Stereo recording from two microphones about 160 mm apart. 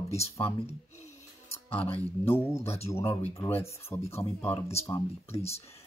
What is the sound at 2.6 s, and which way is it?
Speech, 40° left (ahead or behind).